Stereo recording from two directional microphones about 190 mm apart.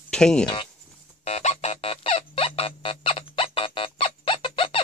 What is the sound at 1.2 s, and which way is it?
Music, 35° left (ahead or behind).